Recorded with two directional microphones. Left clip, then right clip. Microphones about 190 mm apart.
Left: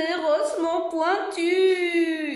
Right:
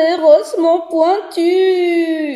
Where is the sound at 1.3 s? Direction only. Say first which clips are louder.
Right 8 dB; 40° right (ahead or behind).